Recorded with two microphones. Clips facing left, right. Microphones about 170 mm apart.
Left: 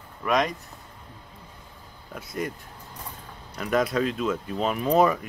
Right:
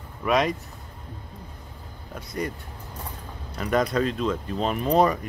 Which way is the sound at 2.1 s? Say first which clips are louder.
Right 1 dB; centre (ahead or behind).